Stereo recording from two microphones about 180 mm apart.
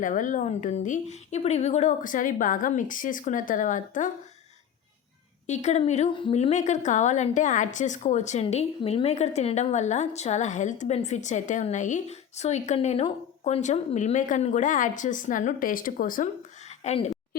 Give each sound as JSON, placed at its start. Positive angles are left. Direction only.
{"t": 0.0, "sound": "a woman's voice", "side_deg": 45}
{"t": 5.5, "sound": "a woman's voice", "side_deg": 40}